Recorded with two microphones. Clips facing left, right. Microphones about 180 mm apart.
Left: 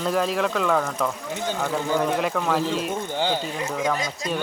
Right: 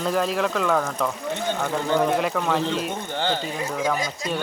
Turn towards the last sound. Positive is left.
turn(degrees=0)  # may be behind; listen again after turning